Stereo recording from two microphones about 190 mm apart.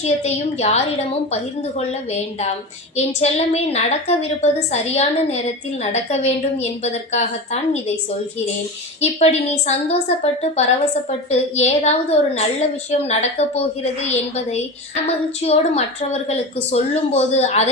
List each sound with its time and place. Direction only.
0.0 s a woman's voice: 35° left (ahead or behind)
2.4 s a woman's voice: 35° left (ahead or behind)
9.0 s a woman's voice: 35° left (ahead or behind)
11.3 s a woman's voice: 35° left (ahead or behind)